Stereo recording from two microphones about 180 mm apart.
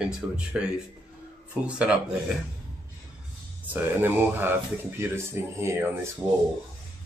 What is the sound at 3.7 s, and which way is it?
A man's voice, 10° right (ahead or behind).